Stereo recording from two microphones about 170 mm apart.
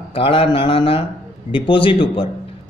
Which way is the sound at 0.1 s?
35° left (ahead or behind).